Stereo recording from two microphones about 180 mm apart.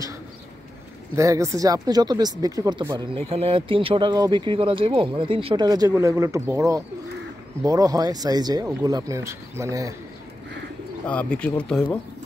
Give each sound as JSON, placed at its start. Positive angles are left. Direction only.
{"t": 1.1, "sound": "speech", "side_deg": -15}
{"t": 11.1, "sound": "speech", "side_deg": 5}